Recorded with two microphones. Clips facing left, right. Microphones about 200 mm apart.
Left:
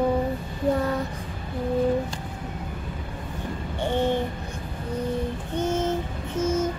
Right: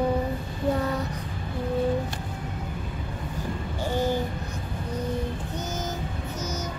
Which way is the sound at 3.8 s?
25° left (ahead or behind).